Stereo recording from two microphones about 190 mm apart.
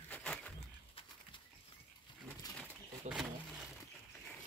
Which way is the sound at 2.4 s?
20° left (ahead or behind).